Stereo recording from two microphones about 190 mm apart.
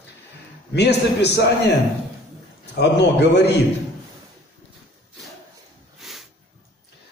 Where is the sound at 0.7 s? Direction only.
60° left (ahead or behind).